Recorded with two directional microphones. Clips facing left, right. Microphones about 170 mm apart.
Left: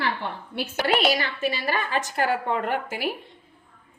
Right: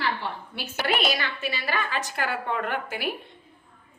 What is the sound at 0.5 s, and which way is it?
A woman's voice, 50° left (ahead or behind).